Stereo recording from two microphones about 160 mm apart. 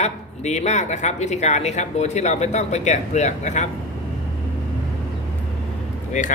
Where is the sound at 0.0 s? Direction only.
45° left (ahead or behind).